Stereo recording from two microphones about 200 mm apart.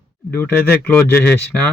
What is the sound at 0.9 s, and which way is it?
Speech, 10° left (ahead or behind).